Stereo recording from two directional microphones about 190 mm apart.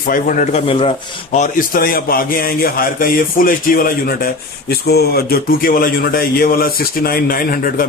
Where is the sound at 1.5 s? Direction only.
50° left (ahead or behind).